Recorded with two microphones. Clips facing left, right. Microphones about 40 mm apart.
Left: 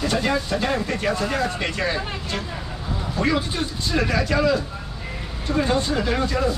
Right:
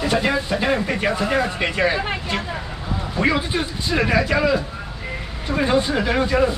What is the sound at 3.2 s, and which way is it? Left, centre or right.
Speech, right.